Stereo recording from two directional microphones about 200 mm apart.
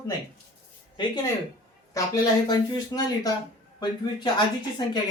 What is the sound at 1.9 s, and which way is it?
Speech, 20° left (ahead or behind).